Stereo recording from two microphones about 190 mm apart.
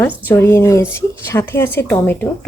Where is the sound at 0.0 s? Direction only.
10° left (ahead or behind).